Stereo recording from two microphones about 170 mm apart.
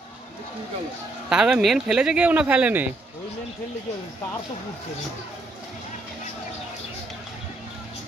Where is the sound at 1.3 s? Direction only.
5° right (ahead or behind).